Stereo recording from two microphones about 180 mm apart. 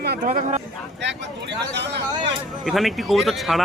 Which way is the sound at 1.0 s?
70° right (ahead or behind).